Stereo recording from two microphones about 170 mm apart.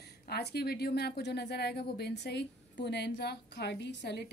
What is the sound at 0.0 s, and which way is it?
A woman's voice, 70° left (ahead or behind).